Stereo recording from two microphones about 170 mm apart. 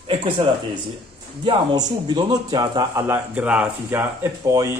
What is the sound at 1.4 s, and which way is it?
Speech, 25° right (ahead or behind).